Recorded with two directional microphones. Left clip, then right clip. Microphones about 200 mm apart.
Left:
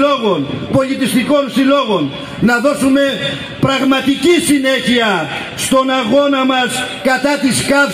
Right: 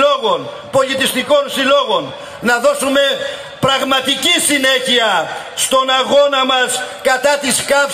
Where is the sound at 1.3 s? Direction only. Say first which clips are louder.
Even; 45° left (ahead or behind).